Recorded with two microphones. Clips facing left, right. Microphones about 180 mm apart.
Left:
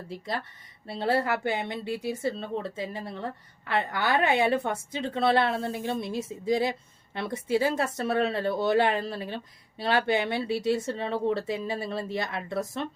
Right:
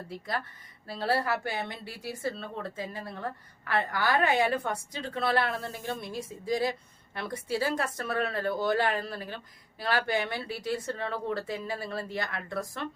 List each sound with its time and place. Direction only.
0.9 s speech: 20° left (ahead or behind)